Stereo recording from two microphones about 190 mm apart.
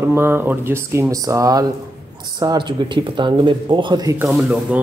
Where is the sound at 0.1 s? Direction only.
10° right (ahead or behind).